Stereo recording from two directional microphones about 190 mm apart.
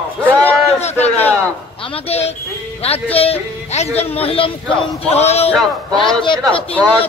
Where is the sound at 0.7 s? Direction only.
35° left (ahead or behind).